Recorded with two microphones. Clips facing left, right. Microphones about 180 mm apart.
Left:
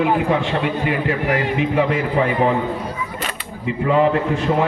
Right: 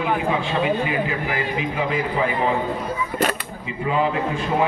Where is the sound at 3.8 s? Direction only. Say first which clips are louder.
Left 5 dB; 60° left (ahead or behind).